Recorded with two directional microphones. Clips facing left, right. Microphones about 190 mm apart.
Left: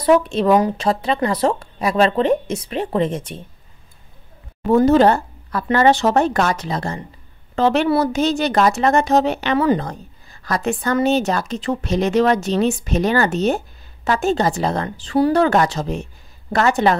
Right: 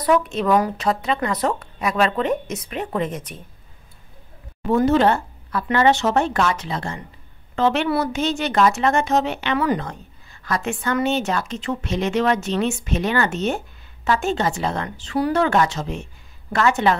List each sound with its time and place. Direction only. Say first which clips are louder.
0.0 s a woman's voice: left 4 dB; 30° left (ahead or behind)
4.6 s a woman's voice: left 4 dB; 35° left (ahead or behind)